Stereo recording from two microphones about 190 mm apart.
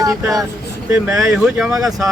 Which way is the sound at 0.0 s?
20° right (ahead or behind).